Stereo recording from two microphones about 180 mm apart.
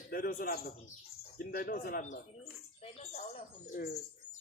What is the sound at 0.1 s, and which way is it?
Speech, 50° left (ahead or behind).